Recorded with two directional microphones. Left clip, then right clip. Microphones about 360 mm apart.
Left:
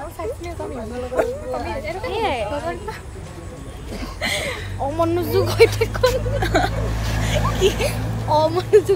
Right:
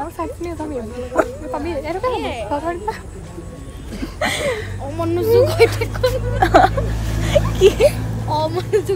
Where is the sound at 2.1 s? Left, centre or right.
Centre.